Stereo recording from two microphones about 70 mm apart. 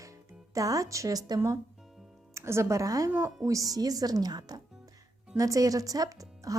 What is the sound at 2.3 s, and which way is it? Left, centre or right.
A woman's voice, right.